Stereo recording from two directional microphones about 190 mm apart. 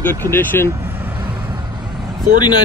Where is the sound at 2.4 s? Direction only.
20° left (ahead or behind).